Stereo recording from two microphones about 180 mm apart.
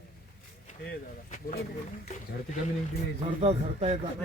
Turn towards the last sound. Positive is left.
turn(degrees=-35)  # may be behind; listen again after turning